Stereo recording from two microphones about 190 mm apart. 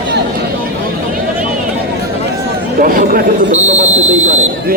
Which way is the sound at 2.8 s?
50° right (ahead or behind).